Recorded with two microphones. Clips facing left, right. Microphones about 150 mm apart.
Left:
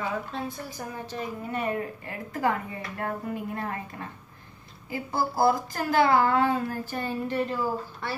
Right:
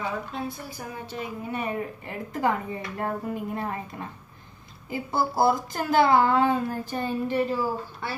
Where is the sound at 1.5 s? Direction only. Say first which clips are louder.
Left 1 dB; 15° right (ahead or behind).